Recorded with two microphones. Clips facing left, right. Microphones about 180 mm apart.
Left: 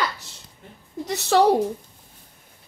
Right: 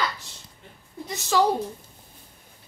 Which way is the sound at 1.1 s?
65° left (ahead or behind).